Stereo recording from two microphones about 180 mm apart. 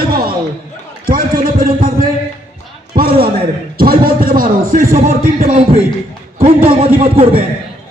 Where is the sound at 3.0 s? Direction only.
55° right (ahead or behind).